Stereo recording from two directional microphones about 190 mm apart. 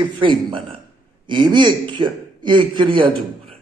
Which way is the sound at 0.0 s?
25° right (ahead or behind).